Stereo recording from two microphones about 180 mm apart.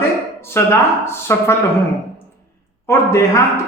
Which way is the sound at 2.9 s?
15° left (ahead or behind).